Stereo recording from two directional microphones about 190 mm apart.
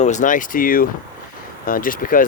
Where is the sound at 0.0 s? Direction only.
40° left (ahead or behind).